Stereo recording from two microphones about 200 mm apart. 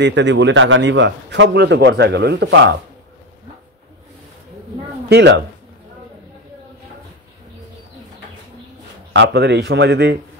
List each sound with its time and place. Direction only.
0.0 s a man's voice: 65° right (ahead or behind)
5.1 s a man's voice: 60° right (ahead or behind)
9.1 s a man's voice: 60° right (ahead or behind)